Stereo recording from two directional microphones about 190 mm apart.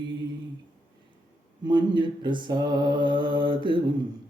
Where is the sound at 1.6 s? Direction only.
25° right (ahead or behind).